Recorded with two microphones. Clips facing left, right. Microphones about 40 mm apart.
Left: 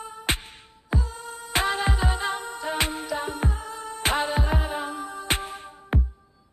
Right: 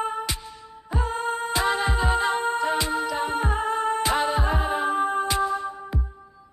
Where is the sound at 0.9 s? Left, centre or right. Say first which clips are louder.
Right 8 dB; right.